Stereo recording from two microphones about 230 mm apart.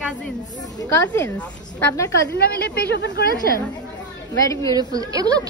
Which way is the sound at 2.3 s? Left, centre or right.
Left.